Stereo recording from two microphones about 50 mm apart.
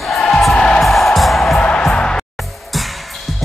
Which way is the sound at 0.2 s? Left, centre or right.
Centre.